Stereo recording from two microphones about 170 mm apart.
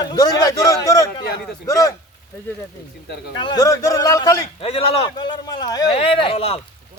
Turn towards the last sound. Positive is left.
turn(degrees=35)  # may be behind; listen again after turning